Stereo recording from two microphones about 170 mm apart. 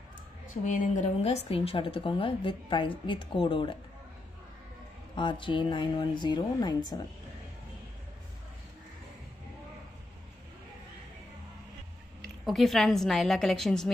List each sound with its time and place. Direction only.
0.7 s a woman's voice: 50° left (ahead or behind); by 3.7 s 30° left (ahead or behind)
5.1 s speech: 30° left (ahead or behind)
12.4 s a woman's voice: centre (ahead or behind)